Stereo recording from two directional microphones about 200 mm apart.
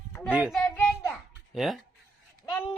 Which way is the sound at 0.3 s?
5° right (ahead or behind).